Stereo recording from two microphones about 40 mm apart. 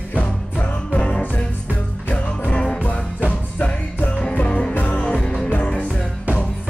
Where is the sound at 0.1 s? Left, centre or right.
Left.